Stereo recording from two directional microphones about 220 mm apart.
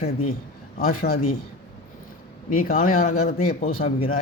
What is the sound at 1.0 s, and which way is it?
Speech, 45° left (ahead or behind).